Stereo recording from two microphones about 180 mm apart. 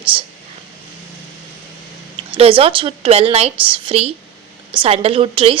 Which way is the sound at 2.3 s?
30° right (ahead or behind).